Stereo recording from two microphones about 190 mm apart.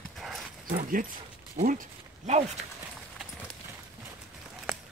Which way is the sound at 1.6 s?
45° right (ahead or behind).